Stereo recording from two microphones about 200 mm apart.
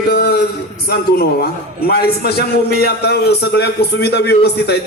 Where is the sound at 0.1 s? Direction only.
55° left (ahead or behind).